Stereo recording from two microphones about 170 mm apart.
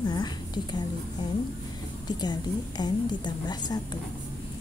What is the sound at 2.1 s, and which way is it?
A woman's voice, 25° left (ahead or behind).